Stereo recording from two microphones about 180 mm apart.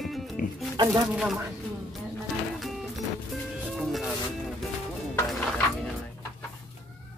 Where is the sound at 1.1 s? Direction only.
5° right (ahead or behind).